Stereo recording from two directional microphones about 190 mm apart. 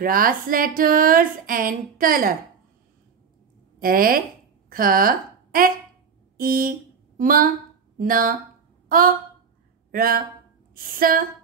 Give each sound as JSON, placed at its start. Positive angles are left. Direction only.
{"t": 0.0, "sound": "speech", "side_deg": -50}
{"t": 3.8, "sound": "a woman's voice", "side_deg": -50}
{"t": 8.8, "sound": "a sound", "side_deg": -45}
{"t": 9.8, "sound": "a woman's voice", "side_deg": -50}